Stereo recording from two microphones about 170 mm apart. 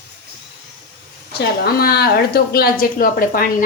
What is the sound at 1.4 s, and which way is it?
A woman's voice, 65° left (ahead or behind).